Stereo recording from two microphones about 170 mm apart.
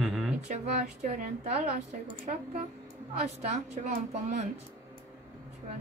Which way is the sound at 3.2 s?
45° right (ahead or behind).